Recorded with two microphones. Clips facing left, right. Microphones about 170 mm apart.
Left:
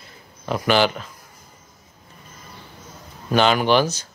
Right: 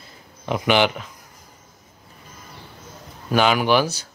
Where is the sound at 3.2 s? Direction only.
10° right (ahead or behind).